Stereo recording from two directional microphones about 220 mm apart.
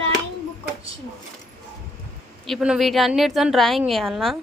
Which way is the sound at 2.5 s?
Centre (ahead or behind).